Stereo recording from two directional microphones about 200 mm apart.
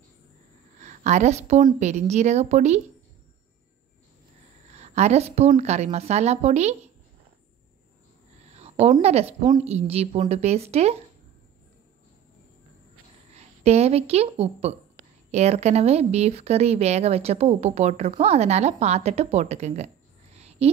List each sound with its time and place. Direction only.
0.7 s a woman's voice: 35° right (ahead or behind)
4.7 s a woman's voice: 35° right (ahead or behind)
8.5 s a woman's voice: 30° right (ahead or behind)
13.3 s a woman's voice: 30° right (ahead or behind)
20.3 s a sound: 30° right (ahead or behind)